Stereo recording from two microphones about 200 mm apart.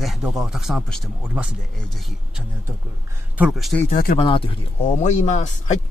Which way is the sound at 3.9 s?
45° left (ahead or behind).